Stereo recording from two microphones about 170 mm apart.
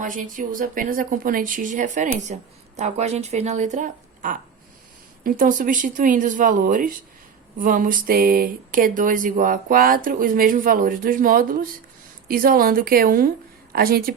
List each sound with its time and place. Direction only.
0.0 s a woman's voice: 50° right (ahead or behind)